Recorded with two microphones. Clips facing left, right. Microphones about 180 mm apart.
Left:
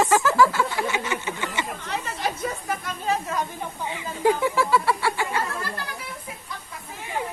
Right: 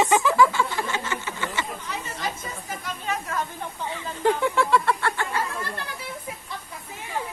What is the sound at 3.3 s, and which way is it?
Speech, 15° left (ahead or behind).